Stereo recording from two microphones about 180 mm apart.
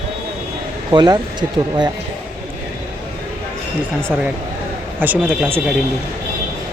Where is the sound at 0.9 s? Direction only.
25° right (ahead or behind).